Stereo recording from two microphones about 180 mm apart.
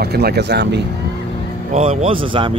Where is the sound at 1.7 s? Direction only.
40° right (ahead or behind).